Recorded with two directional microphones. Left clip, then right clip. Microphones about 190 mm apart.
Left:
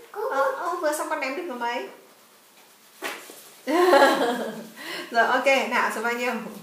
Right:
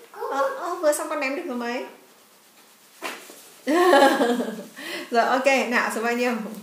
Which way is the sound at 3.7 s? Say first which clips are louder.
Right 1 dB; 55° right (ahead or behind).